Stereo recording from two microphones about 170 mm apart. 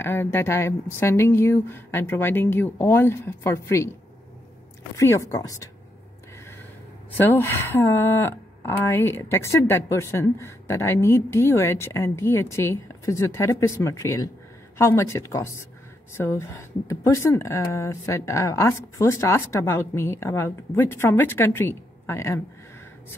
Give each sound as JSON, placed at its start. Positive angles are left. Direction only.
{"t": 0.0, "sound": "speech", "side_deg": 15}
{"t": 4.9, "sound": "a woman's voice", "side_deg": 15}
{"t": 7.2, "sound": "speech", "side_deg": 10}